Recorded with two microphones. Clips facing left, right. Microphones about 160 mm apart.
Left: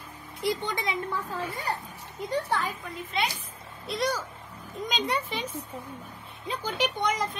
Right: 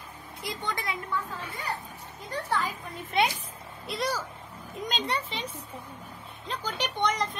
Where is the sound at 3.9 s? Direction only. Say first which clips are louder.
Left 2 dB; centre (ahead or behind).